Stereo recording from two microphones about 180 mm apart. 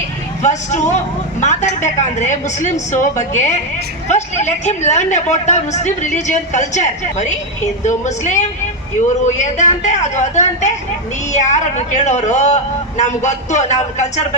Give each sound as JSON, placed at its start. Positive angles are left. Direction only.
{"t": 0.4, "sound": "a woman's voice", "side_deg": 40}